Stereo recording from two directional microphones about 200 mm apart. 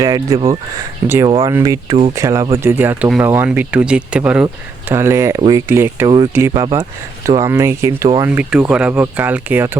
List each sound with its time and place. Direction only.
0.0 s speech: 20° right (ahead or behind)
1.3 s speech: 25° right (ahead or behind)